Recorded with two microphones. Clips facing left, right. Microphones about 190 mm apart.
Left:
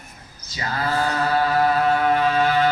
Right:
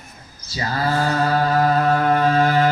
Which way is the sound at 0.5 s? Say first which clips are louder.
Right 2 dB; 35° right (ahead or behind).